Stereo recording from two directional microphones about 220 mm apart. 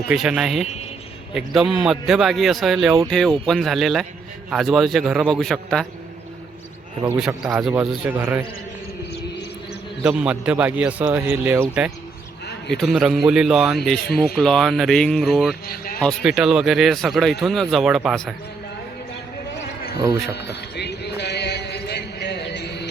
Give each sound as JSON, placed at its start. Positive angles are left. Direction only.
{"t": 0.1, "sound": "speech", "side_deg": -5}
{"t": 7.4, "sound": "a man's voice", "side_deg": 0}
{"t": 10.0, "sound": "a man's voice", "side_deg": -5}
{"t": 15.6, "sound": "a man's voice", "side_deg": 45}
{"t": 16.0, "sound": "speech", "side_deg": 0}
{"t": 20.3, "sound": "music", "side_deg": 50}